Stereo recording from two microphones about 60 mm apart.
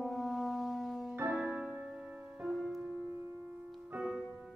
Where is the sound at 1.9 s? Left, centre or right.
Right.